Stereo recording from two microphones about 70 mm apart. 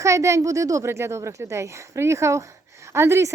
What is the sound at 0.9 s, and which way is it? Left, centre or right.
Speech, right.